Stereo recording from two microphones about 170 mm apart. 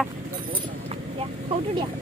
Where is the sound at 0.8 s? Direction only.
35° right (ahead or behind).